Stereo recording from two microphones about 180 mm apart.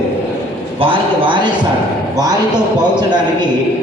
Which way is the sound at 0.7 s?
30° right (ahead or behind).